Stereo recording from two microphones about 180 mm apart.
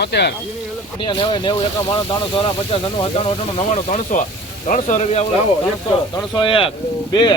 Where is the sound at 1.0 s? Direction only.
25° left (ahead or behind).